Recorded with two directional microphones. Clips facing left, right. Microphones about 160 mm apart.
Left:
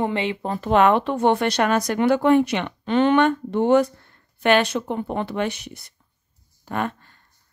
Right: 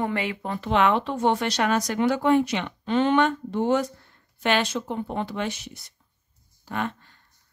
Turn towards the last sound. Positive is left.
turn(degrees=50)  # may be behind; listen again after turning